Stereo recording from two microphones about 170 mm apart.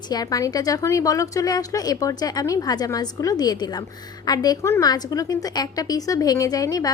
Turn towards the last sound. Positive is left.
turn(degrees=20)  # may be behind; listen again after turning